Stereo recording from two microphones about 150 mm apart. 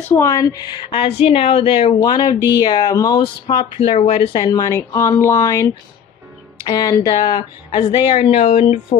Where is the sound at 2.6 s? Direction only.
25° left (ahead or behind).